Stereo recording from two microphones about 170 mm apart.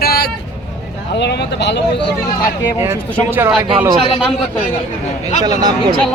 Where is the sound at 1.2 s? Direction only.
90° left.